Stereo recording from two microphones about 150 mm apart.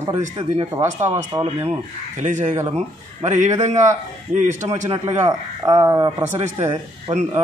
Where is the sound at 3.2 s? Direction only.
50° right (ahead or behind).